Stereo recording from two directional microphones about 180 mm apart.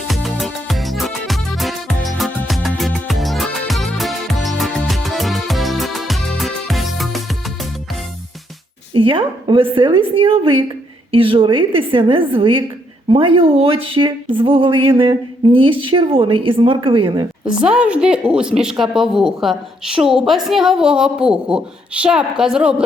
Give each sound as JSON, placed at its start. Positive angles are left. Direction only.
{"t": 0.1, "sound": "music", "side_deg": 0}
{"t": 8.9, "sound": "speech", "side_deg": -30}
{"t": 17.4, "sound": "a woman's voice", "side_deg": -5}